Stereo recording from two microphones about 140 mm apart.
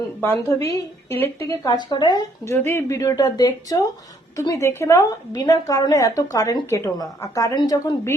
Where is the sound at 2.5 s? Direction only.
20° left (ahead or behind).